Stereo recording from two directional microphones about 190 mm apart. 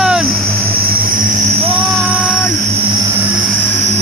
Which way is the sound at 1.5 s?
30° right (ahead or behind).